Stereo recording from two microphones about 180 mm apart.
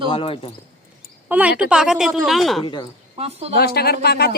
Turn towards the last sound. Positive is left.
turn(degrees=60)  # may be behind; listen again after turning